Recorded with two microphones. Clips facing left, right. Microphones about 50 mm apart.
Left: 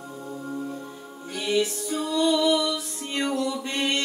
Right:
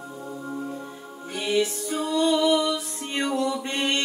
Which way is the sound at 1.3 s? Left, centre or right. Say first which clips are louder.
Right 1 dB; right.